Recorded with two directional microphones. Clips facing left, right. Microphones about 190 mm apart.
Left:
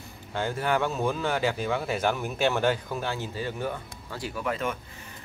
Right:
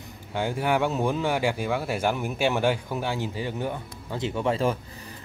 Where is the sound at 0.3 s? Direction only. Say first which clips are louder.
Right 2 dB; 15° right (ahead or behind).